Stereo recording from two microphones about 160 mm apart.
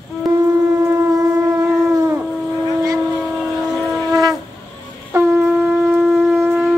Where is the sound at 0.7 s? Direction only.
15° right (ahead or behind).